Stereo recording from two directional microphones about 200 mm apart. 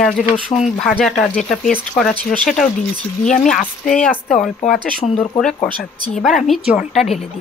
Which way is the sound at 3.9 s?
5° left (ahead or behind).